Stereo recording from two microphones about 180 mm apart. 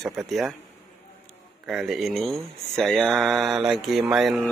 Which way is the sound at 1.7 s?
Centre (ahead or behind).